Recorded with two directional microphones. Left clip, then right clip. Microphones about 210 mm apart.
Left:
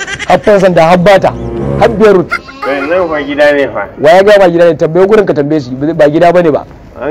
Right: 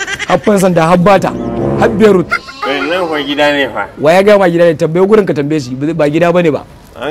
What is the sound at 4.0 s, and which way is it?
A man's voice, 45° right (ahead or behind).